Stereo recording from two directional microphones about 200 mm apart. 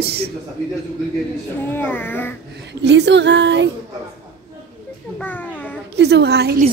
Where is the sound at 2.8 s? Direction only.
60° right (ahead or behind).